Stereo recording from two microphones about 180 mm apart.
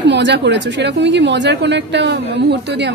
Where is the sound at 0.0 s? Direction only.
70° right (ahead or behind).